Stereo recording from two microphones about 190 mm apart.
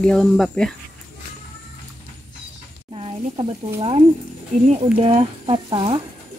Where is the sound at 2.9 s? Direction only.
30° right (ahead or behind).